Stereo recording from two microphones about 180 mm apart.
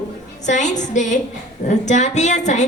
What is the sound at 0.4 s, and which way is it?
A woman's voice, 40° left (ahead or behind).